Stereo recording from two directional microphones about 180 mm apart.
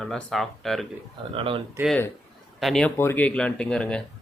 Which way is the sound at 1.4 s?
30° right (ahead or behind).